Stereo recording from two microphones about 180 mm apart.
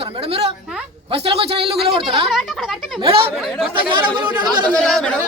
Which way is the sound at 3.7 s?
25° right (ahead or behind).